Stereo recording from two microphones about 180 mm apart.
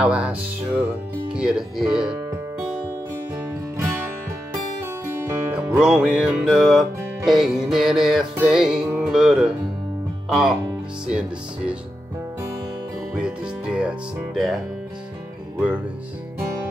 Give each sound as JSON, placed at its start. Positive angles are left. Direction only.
{"t": 0.0, "sound": "music", "side_deg": -5}
{"t": 5.2, "sound": "music", "side_deg": -10}
{"t": 13.2, "sound": "music", "side_deg": -5}
{"t": 15.5, "sound": "speech", "side_deg": -10}